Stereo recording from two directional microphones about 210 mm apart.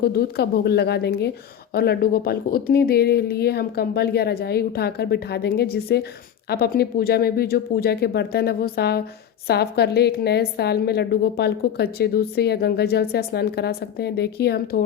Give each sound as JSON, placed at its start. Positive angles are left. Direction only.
{"t": 0.0, "sound": "a woman's voice", "side_deg": 50}